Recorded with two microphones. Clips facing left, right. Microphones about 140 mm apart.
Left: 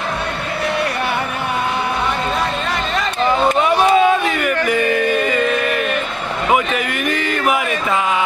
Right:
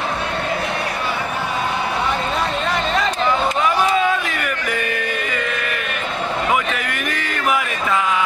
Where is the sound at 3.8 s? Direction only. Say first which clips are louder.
Left 5 dB; 25° left (ahead or behind).